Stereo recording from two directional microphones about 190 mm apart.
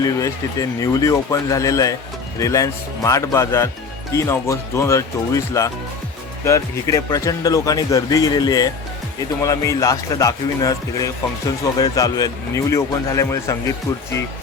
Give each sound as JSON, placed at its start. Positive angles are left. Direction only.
{"t": 0.0, "sound": "speech", "side_deg": 20}